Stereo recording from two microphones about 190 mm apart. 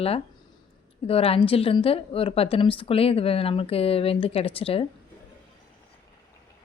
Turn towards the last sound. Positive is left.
turn(degrees=30)  # may be behind; listen again after turning